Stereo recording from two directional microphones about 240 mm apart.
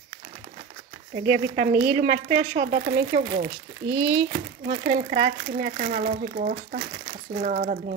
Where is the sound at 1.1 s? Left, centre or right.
Right.